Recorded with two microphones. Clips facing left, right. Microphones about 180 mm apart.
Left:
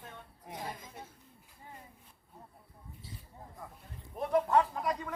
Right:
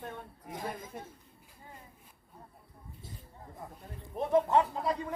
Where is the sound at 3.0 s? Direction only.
50° right (ahead or behind).